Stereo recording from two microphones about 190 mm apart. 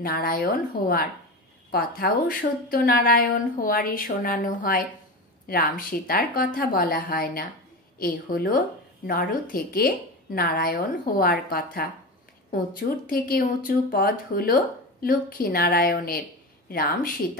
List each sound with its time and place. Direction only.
0.0 s a woman's voice: 50° left (ahead or behind)